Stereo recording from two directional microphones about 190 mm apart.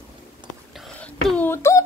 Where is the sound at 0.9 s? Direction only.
5° left (ahead or behind).